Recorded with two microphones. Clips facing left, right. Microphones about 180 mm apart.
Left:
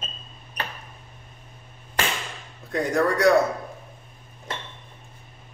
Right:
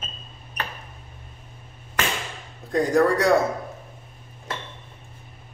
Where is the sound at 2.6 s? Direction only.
35° right (ahead or behind).